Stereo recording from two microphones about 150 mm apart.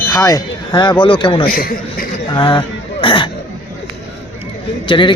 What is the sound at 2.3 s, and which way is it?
Speech, 30° left (ahead or behind).